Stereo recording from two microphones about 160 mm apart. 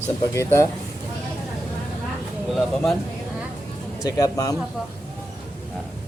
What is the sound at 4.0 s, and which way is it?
Speech, 20° left (ahead or behind).